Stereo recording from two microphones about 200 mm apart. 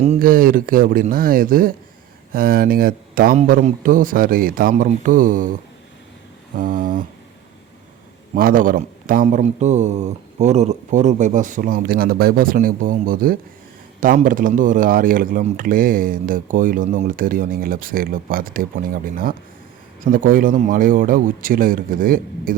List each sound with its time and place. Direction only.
0.0 s speech: 40° right (ahead or behind)
6.6 s speech: 45° right (ahead or behind)
8.4 s speech: 45° right (ahead or behind)